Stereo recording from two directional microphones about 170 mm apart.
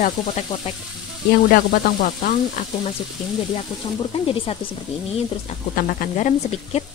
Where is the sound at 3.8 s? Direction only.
30° left (ahead or behind).